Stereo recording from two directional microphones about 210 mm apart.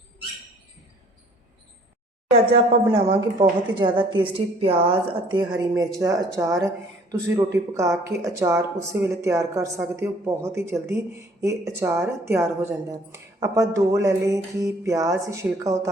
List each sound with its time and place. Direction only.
2.5 s a woman's voice: 25° right (ahead or behind)